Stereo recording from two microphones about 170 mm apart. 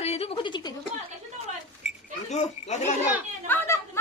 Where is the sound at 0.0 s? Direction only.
35° left (ahead or behind).